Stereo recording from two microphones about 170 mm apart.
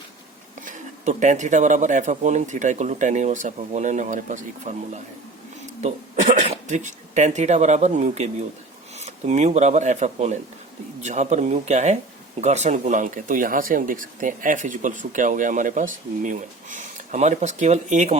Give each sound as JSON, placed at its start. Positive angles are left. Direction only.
{"t": 0.6, "sound": "speech", "side_deg": -50}
{"t": 5.8, "sound": "speech", "side_deg": -45}